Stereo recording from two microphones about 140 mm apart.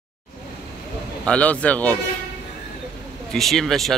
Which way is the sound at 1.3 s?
10° left (ahead or behind).